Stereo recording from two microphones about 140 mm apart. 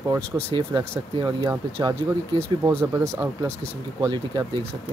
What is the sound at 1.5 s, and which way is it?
Speech, 25° right (ahead or behind).